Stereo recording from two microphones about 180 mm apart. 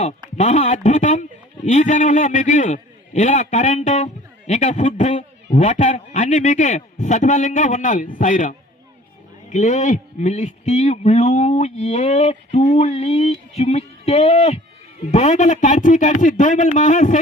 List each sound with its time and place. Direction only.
0.3 s a man's voice: 40° left (ahead or behind)